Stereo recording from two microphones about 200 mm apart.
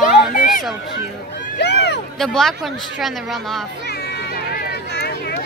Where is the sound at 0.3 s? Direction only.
40° left (ahead or behind).